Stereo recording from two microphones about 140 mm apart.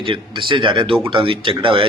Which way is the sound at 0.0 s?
35° right (ahead or behind).